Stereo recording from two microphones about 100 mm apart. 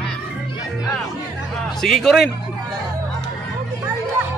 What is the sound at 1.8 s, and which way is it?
Speech, 5° left (ahead or behind).